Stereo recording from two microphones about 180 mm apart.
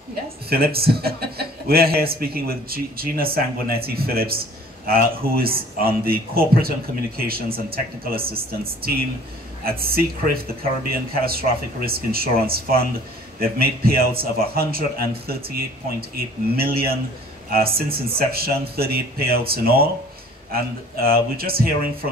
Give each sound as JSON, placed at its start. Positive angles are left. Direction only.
{"t": 0.5, "sound": "a man's voice", "side_deg": -60}
{"t": 9.7, "sound": "a man's voice", "side_deg": -55}